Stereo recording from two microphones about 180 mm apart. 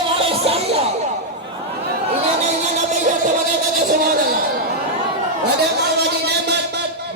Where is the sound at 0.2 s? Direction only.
30° right (ahead or behind).